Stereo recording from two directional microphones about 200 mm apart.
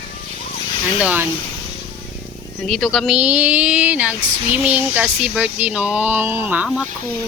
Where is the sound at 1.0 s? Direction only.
5° right (ahead or behind).